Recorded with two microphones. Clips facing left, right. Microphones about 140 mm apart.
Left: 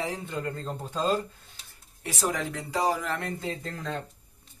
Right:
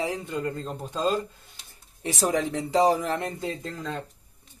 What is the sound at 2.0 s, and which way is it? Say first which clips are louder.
Speech: right 5 dB; 20° right (ahead or behind).